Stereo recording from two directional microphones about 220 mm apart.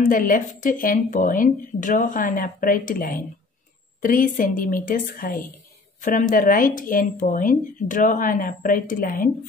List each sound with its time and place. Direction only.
0.0 s speech: 40° left (ahead or behind)